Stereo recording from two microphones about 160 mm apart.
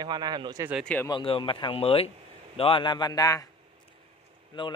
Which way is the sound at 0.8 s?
5° left (ahead or behind).